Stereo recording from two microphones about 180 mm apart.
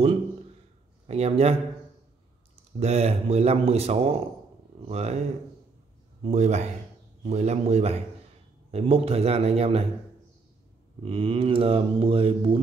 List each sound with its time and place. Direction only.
1.0 s mantra: 35° right (ahead or behind)
2.8 s mantra: 35° right (ahead or behind)
6.2 s mantra: 40° right (ahead or behind)
11.0 s mantra: 30° right (ahead or behind)